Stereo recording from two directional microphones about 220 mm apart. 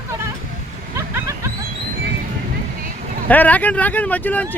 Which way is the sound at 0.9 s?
10° right (ahead or behind).